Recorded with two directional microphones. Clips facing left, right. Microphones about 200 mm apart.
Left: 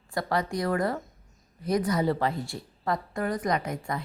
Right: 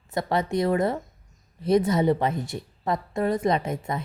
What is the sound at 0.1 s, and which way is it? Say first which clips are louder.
A woman's voice: right 3 dB; 25° right (ahead or behind).